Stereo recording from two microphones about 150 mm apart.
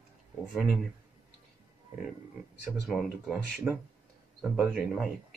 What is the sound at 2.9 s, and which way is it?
A man's voice, 5° right (ahead or behind).